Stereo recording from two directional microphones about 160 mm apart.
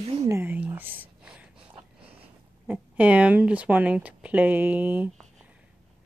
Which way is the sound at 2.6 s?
10° right (ahead or behind).